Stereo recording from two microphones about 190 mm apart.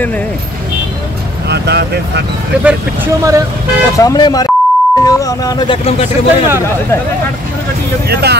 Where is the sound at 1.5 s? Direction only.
60° right (ahead or behind).